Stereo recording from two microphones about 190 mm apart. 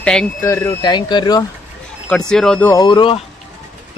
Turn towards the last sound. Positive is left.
turn(degrees=25)  # may be behind; listen again after turning